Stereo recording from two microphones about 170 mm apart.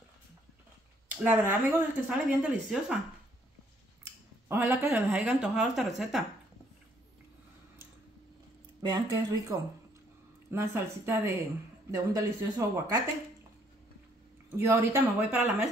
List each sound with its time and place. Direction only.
1.2 s speech: 10° right (ahead or behind)
4.5 s speech: 15° right (ahead or behind)
8.8 s speech: 25° right (ahead or behind)
14.6 s speech: 15° right (ahead or behind)